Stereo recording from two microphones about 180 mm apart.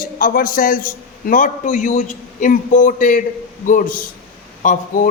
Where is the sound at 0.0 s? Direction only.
50° left (ahead or behind).